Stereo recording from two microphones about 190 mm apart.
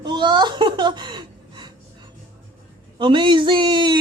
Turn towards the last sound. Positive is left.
turn(degrees=-25)  # may be behind; listen again after turning